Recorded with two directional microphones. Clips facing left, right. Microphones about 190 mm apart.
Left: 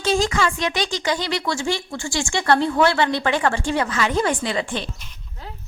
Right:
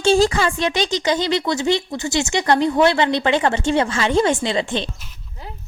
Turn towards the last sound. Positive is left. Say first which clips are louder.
# right 3 dB
turn(degrees=-25)  # may be behind; listen again after turning